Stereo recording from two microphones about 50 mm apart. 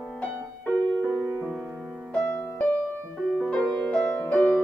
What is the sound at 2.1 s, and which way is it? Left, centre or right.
Music, left.